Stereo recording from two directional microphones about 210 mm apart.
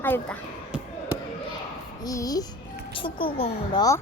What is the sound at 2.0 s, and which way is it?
A woman's voice, 15° left (ahead or behind).